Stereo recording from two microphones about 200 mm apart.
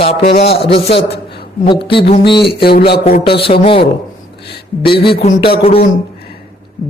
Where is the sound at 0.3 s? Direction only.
30° left (ahead or behind).